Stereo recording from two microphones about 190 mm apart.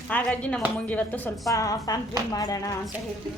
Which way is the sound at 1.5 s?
20° left (ahead or behind).